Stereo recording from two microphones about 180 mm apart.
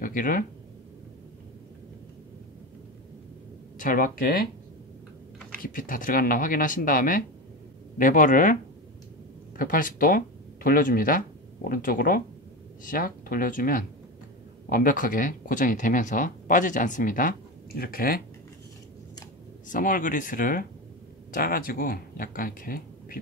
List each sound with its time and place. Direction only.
0.0 s speech: 50° left (ahead or behind)
3.7 s speech: 50° left (ahead or behind)
5.6 s speech: 50° left (ahead or behind)
9.6 s speech: 50° left (ahead or behind)
19.7 s speech: 50° left (ahead or behind)